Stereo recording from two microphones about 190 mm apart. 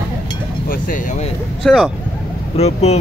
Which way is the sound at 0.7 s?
45° left (ahead or behind).